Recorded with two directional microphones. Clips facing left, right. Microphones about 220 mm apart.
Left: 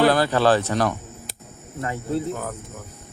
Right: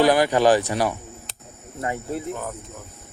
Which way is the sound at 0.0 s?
15° right (ahead or behind).